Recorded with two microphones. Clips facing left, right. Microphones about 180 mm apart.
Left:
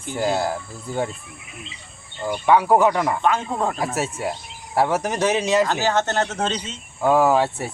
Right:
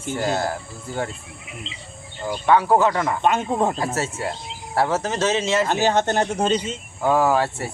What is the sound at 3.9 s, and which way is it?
Speech, 15° left (ahead or behind).